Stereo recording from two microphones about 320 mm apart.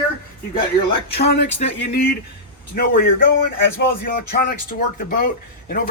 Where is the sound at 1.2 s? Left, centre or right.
Left.